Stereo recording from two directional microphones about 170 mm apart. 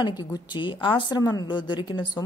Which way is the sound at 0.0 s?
25° left (ahead or behind).